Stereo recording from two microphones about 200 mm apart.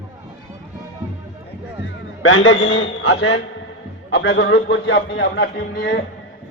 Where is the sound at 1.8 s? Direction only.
70° left (ahead or behind).